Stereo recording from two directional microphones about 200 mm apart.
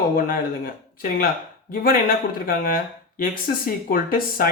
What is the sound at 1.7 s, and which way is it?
Speech, 45° left (ahead or behind).